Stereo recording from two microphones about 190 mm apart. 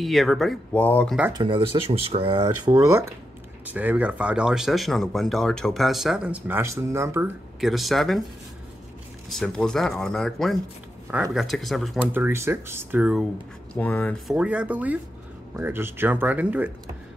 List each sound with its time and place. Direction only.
0.0 s speech: centre (ahead or behind)
1.3 s speech: 25° right (ahead or behind)
7.6 s speech: centre (ahead or behind)
9.3 s speech: centre (ahead or behind)
13.7 s speech: 5° left (ahead or behind); by 16.7 s 10° right (ahead or behind)